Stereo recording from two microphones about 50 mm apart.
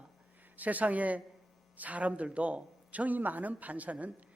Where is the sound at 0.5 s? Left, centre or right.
Right.